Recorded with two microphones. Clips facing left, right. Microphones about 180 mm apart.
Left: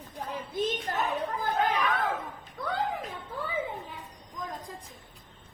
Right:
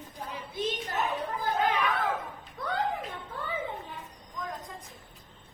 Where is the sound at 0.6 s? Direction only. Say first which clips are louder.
Left 2 dB; 55° left (ahead or behind).